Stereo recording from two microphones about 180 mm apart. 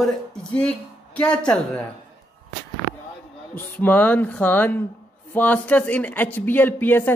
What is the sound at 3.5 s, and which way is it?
Speech, 10° left (ahead or behind).